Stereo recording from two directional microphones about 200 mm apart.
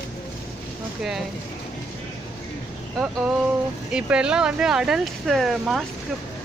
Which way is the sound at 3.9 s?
5° right (ahead or behind).